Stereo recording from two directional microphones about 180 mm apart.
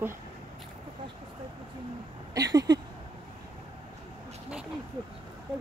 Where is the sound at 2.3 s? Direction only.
20° right (ahead or behind).